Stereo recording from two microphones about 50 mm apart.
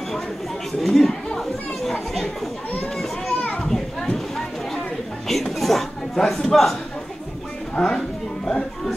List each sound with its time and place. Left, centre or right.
0.7 s speech: centre
3.3 s children playing: left
3.6 s children playing: centre
5.3 s a sound: centre
7.7 s speech: centre